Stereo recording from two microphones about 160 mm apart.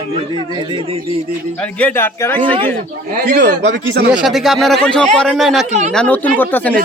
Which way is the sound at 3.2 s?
60° right (ahead or behind).